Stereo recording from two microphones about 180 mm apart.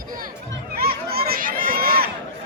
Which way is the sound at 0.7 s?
55° right (ahead or behind).